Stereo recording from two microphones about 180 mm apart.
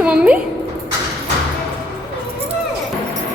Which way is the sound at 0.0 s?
5° right (ahead or behind).